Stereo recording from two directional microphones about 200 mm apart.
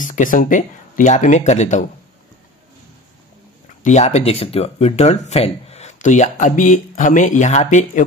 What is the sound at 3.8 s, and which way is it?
Speech, 35° left (ahead or behind).